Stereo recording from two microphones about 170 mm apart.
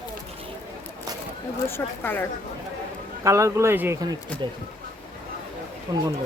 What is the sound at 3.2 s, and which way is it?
Speech, 20° right (ahead or behind).